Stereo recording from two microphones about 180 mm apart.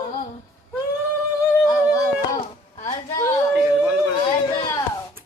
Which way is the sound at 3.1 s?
15° left (ahead or behind).